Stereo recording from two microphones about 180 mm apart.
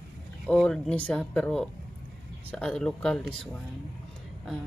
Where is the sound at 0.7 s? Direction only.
5° left (ahead or behind).